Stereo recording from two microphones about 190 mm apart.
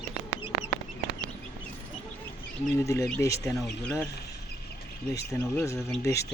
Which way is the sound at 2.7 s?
15° left (ahead or behind).